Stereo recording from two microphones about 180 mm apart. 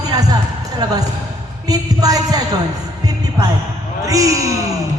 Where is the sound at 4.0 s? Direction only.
20° right (ahead or behind).